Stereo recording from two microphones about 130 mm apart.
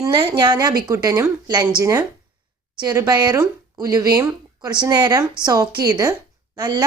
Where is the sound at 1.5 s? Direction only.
30° right (ahead or behind).